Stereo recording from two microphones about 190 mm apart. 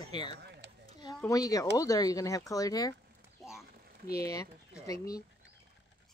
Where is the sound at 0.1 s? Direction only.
25° left (ahead or behind).